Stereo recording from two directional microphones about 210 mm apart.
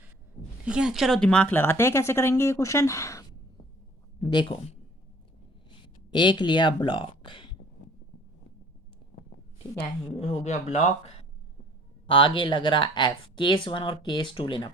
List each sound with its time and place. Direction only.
0.6 s a man's voice: 5° right (ahead or behind); by 4.8 s 25° left (ahead or behind)
6.1 s speech: 20° left (ahead or behind)
7.2 s a sound: 25° left (ahead or behind)
10.2 s speech: 30° left (ahead or behind)